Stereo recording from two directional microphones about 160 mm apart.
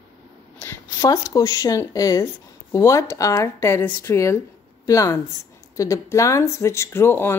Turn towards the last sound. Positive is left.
turn(degrees=15)  # may be behind; listen again after turning